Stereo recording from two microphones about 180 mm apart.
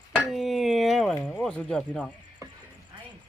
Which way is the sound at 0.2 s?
Centre (ahead or behind).